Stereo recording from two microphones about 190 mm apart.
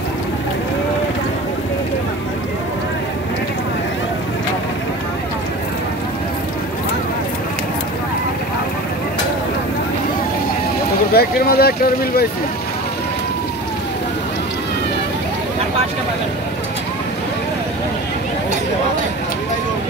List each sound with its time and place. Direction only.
11.1 s speech: 55° left (ahead or behind)